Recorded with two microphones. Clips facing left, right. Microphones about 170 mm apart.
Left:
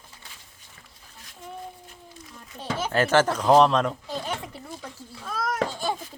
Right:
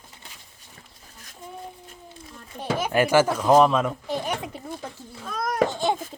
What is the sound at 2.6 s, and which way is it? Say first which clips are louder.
Speech: right 3 dB; 15° right (ahead or behind).